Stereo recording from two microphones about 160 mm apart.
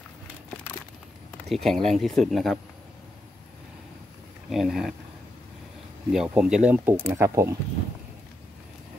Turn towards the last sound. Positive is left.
turn(degrees=-15)  # may be behind; listen again after turning